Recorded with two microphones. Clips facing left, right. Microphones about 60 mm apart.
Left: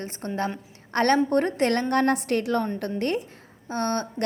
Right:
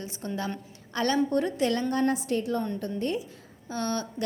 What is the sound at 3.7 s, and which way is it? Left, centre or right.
Speech, left.